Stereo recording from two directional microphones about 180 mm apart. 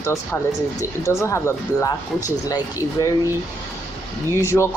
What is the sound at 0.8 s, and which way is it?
Speech, 15° left (ahead or behind).